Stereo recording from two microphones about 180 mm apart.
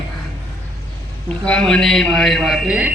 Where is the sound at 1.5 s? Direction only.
5° left (ahead or behind).